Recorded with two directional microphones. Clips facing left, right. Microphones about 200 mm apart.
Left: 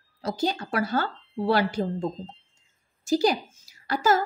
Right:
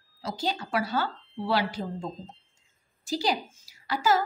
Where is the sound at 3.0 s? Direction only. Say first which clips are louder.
Left 6 dB; 50° left (ahead or behind).